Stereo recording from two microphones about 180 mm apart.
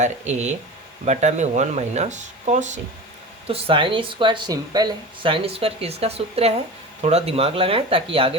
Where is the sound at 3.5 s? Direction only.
30° right (ahead or behind).